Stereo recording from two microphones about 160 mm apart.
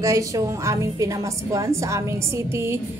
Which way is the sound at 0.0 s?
20° right (ahead or behind).